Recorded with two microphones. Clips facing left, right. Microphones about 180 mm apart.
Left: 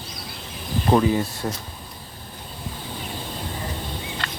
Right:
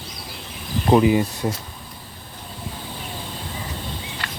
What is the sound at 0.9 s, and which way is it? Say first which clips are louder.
Speech: right 4 dB; 15° right (ahead or behind).